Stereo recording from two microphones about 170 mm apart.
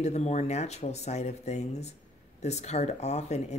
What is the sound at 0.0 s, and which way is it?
Speech, 40° left (ahead or behind).